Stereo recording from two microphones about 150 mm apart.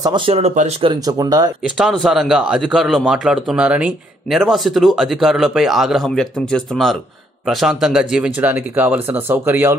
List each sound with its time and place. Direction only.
0.0 s speech: 35° right (ahead or behind)
0.9 s speech: 25° right (ahead or behind)
1.8 s a man's voice: centre (ahead or behind)